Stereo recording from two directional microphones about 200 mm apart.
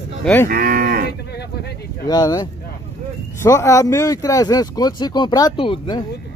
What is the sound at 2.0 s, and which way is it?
Speech, 20° left (ahead or behind).